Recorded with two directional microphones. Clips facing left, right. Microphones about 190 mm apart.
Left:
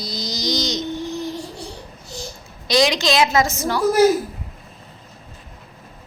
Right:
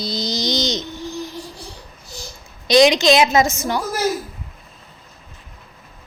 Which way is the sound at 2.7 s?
20° right (ahead or behind).